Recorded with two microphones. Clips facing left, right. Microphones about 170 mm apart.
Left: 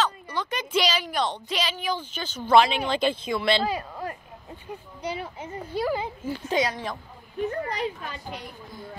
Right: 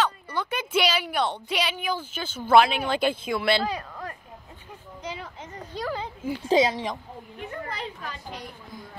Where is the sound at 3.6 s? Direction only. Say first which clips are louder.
Left 2 dB; 5° left (ahead or behind).